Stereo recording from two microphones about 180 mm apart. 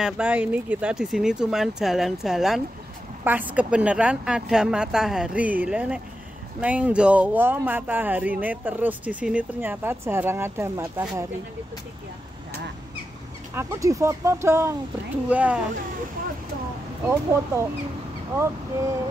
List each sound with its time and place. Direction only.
0.0 s a woman's voice: 5° right (ahead or behind)
13.6 s speech: 15° right (ahead or behind)
17.0 s speech: 15° right (ahead or behind)